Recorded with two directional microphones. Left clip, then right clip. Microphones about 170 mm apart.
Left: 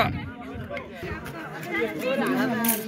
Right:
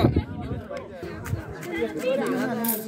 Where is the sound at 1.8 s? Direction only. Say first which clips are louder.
Right 2 dB; 30° left (ahead or behind).